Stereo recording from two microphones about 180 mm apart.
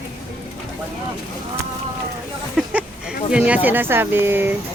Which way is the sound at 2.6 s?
5° right (ahead or behind).